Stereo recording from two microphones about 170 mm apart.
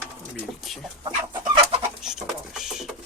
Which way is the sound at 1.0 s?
30° right (ahead or behind).